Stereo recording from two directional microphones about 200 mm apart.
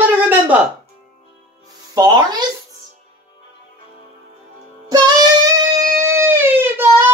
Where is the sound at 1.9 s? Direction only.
20° right (ahead or behind).